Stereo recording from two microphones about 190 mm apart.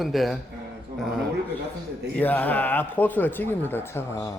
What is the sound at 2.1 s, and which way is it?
Speech, 10° left (ahead or behind).